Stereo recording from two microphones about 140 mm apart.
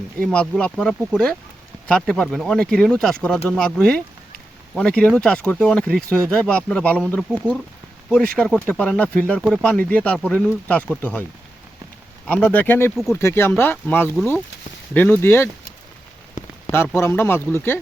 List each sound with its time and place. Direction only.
0.3 s speech: 5° left (ahead or behind)
16.6 s speech: 15° left (ahead or behind)